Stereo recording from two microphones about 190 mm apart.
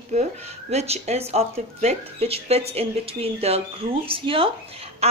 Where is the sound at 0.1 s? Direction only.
35° right (ahead or behind).